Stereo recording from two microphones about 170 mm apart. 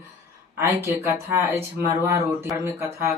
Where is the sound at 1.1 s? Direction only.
15° right (ahead or behind).